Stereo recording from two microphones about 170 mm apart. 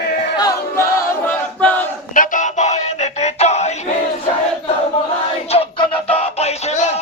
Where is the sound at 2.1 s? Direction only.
45° left (ahead or behind).